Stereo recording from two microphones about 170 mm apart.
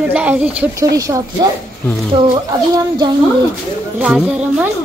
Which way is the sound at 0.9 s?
20° right (ahead or behind).